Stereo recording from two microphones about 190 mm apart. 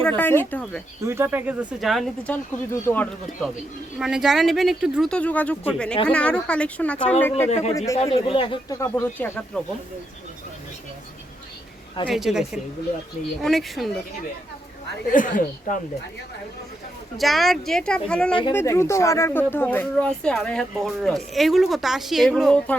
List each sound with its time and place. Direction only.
0.0 s speech: 10° left (ahead or behind)
1.0 s speech: 15° right (ahead or behind); by 3.5 s 10° left (ahead or behind)
3.9 s speech: 5° right (ahead or behind)
7.4 s speech: 35° left (ahead or behind)
8.8 s speech: 10° left (ahead or behind)
12.0 s speech: centre (ahead or behind)
15.1 s speech: 45° left (ahead or behind)
17.2 s speech: centre (ahead or behind)